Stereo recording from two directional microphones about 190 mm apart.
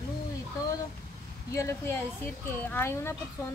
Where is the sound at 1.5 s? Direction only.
15° left (ahead or behind).